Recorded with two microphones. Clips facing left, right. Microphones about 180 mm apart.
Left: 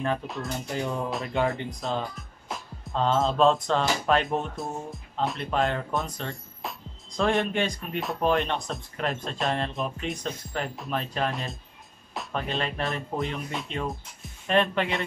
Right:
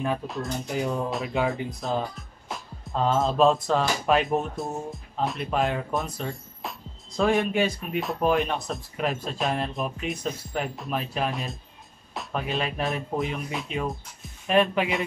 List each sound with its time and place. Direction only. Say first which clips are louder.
0.0 s speech: right 1 dB; 5° right (ahead or behind)